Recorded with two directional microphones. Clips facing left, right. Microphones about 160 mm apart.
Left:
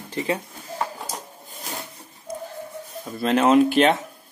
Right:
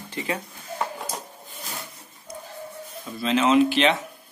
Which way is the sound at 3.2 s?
50° left (ahead or behind).